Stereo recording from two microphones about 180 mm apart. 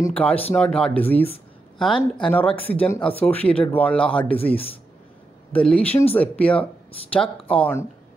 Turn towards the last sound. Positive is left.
turn(degrees=10)  # may be behind; listen again after turning